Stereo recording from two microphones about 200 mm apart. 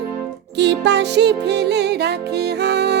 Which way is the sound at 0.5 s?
60° right (ahead or behind).